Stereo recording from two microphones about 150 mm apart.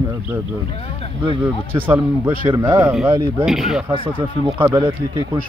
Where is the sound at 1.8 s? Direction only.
10° right (ahead or behind).